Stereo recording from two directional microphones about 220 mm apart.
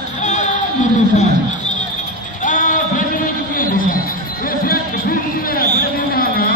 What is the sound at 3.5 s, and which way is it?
Music, 40° left (ahead or behind).